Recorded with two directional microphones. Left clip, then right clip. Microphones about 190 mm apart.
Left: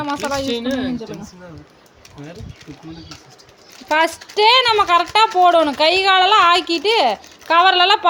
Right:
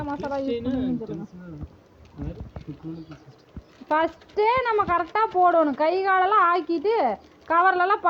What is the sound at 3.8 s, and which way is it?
Speech, 20° left (ahead or behind).